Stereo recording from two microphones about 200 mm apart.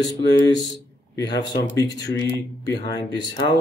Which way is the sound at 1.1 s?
20° left (ahead or behind).